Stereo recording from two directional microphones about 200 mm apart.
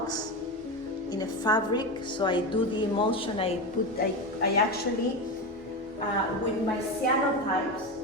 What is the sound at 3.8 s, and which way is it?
Speech, 45° left (ahead or behind).